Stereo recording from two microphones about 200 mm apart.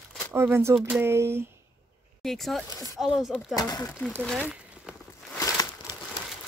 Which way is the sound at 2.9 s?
Centre (ahead or behind).